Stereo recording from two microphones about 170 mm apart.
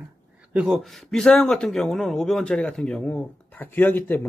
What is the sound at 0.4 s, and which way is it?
A man's voice, 5° right (ahead or behind).